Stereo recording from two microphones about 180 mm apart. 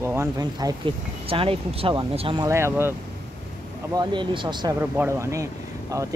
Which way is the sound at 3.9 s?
25° right (ahead or behind).